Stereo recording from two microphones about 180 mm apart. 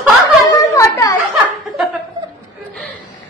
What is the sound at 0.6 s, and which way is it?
Speech, 15° left (ahead or behind).